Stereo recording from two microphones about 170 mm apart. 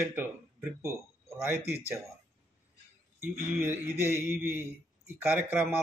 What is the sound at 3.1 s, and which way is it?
Speech, 10° right (ahead or behind).